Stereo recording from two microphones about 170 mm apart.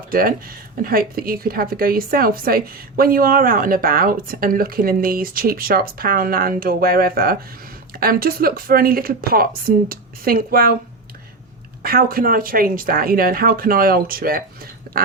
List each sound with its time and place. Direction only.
0.1 s speech: 60° right (ahead or behind)
11.8 s speech: 60° right (ahead or behind)